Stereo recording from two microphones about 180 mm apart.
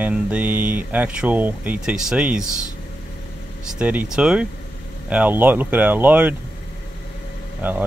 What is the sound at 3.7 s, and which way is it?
Speech, 5° right (ahead or behind).